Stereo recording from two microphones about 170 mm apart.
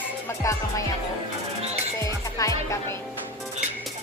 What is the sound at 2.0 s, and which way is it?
Music, 20° left (ahead or behind).